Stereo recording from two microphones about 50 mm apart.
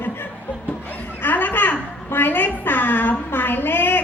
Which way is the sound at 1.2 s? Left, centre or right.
Left.